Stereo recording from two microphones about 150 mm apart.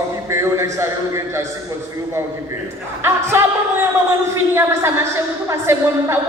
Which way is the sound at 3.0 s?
15° right (ahead or behind).